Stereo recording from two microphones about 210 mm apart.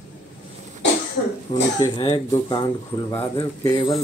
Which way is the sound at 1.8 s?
20° left (ahead or behind).